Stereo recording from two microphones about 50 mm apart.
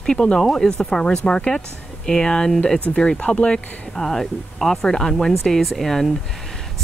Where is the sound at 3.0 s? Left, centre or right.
Left.